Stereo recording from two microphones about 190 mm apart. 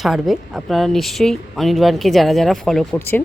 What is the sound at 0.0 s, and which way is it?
Speech, centre (ahead or behind).